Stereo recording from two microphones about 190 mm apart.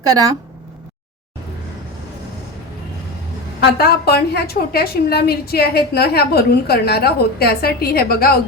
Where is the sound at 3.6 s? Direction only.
55° left (ahead or behind).